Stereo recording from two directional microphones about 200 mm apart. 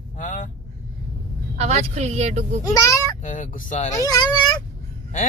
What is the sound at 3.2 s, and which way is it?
Speech, 40° left (ahead or behind).